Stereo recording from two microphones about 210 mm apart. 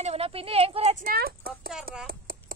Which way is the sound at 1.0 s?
45° right (ahead or behind).